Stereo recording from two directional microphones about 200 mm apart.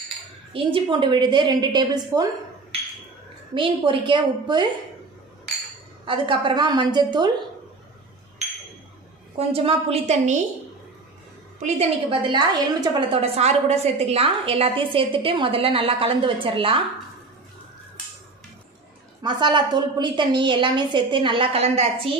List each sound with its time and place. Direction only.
0.5 s a woman's voice: 25° right (ahead or behind)
3.5 s a woman's voice: 25° right (ahead or behind)
6.0 s a woman's voice: 25° right (ahead or behind)
9.5 s a woman's voice: 30° right (ahead or behind)
11.6 s a woman's voice: 25° right (ahead or behind)
19.2 s a woman's voice: 25° right (ahead or behind)